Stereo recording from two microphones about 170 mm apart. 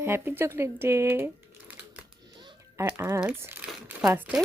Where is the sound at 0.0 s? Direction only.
15° right (ahead or behind).